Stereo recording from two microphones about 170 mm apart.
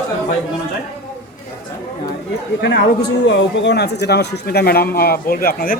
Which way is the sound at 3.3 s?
90° left.